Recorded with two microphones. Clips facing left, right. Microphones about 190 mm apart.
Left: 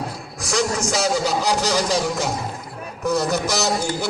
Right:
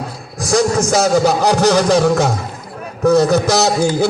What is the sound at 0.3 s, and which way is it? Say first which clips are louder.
A man's voice: right 8 dB; 40° right (ahead or behind).